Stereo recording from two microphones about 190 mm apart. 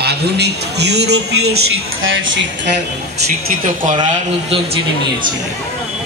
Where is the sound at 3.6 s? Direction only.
45° right (ahead or behind).